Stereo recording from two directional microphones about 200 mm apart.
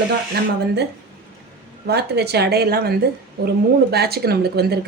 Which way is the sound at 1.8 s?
55° right (ahead or behind).